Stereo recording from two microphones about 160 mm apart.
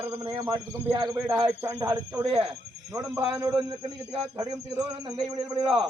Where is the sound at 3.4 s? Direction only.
20° right (ahead or behind).